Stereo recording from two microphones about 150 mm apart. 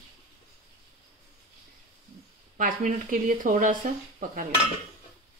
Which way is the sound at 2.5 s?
60° right (ahead or behind).